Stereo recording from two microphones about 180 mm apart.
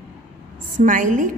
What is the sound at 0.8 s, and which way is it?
Speech, 45° right (ahead or behind).